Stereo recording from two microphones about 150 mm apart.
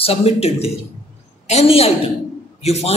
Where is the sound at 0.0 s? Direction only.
40° left (ahead or behind).